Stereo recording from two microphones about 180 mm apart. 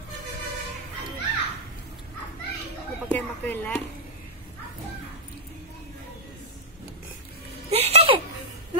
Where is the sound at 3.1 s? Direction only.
10° left (ahead or behind).